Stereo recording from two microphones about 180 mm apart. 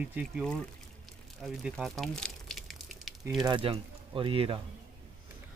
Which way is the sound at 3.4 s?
30° right (ahead or behind).